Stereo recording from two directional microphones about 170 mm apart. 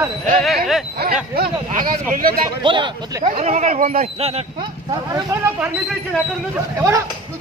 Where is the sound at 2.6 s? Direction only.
30° right (ahead or behind).